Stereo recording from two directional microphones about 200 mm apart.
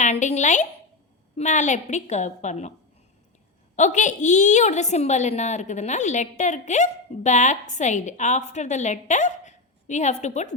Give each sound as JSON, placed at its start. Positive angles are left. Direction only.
{"t": 0.0, "sound": "a woman's voice", "side_deg": 35}
{"t": 3.8, "sound": "a woman's voice", "side_deg": 35}